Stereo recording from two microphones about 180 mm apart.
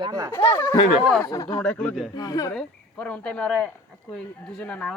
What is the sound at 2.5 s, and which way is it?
Speech, 5° left (ahead or behind).